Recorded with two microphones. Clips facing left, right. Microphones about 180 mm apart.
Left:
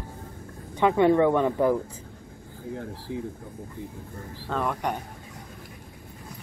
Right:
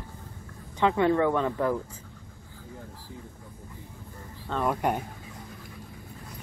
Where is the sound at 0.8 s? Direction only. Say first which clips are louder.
Left 3 dB; 15° left (ahead or behind).